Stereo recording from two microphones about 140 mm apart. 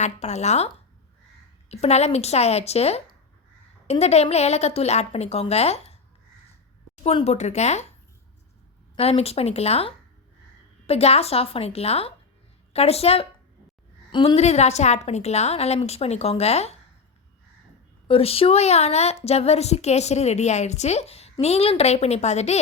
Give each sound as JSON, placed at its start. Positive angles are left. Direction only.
{"t": 0.0, "sound": "a woman's voice", "side_deg": 55}
{"t": 1.7, "sound": "a woman's voice", "side_deg": 50}
{"t": 9.0, "sound": "a woman's voice", "side_deg": 45}
{"t": 14.3, "sound": "a woman's voice", "side_deg": 50}
{"t": 18.1, "sound": "a woman's voice", "side_deg": 45}